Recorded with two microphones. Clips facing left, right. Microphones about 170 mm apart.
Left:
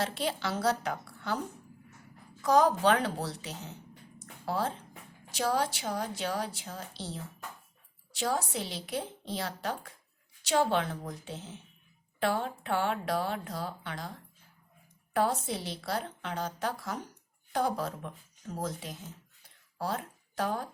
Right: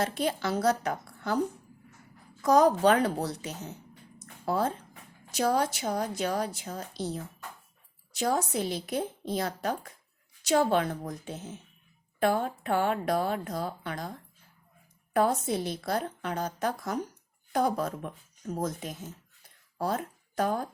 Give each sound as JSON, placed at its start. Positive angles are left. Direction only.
{"t": 0.0, "sound": "speech", "side_deg": -45}
{"t": 2.4, "sound": "speech", "side_deg": -40}
{"t": 15.1, "sound": "speech", "side_deg": -50}